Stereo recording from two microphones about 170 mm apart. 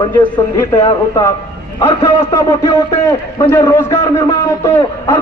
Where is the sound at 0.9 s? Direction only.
15° left (ahead or behind).